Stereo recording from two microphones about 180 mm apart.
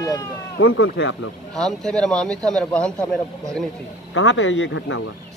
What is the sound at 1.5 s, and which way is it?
Speech, 5° left (ahead or behind).